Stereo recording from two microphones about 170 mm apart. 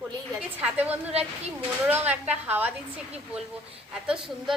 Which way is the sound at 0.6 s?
10° right (ahead or behind).